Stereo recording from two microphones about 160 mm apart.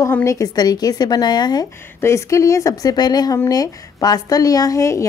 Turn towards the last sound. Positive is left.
turn(degrees=20)  # may be behind; listen again after turning